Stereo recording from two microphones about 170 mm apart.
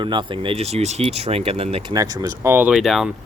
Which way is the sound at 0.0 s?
25° right (ahead or behind).